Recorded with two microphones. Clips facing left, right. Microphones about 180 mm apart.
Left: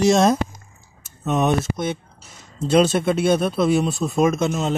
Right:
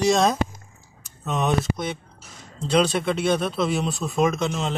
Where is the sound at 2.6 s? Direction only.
5° left (ahead or behind).